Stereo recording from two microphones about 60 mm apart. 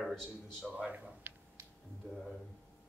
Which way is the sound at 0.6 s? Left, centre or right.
Centre.